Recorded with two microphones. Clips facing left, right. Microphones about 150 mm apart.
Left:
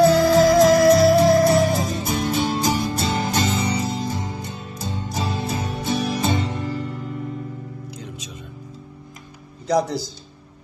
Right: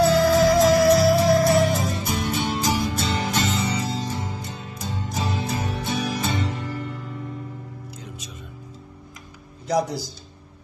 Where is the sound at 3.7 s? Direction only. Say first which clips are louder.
Left 3 dB; 20° left (ahead or behind).